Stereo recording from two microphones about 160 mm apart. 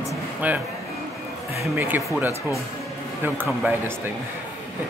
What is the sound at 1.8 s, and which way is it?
Speech, 15° right (ahead or behind).